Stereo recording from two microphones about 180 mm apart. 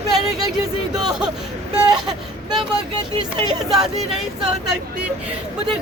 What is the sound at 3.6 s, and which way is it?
Speech, centre (ahead or behind).